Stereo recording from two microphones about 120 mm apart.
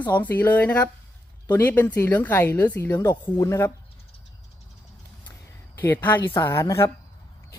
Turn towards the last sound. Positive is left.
turn(degrees=25)  # may be behind; listen again after turning